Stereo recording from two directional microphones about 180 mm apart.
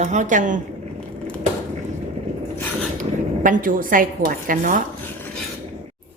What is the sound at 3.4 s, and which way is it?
A woman's voice, 50° right (ahead or behind).